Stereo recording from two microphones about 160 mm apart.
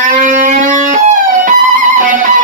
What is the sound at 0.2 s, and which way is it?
Music, 55° right (ahead or behind).